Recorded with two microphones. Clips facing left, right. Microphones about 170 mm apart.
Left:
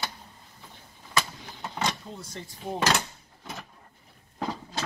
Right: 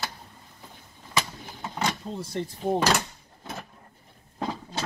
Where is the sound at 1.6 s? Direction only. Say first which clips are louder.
Right 1 dB; centre (ahead or behind).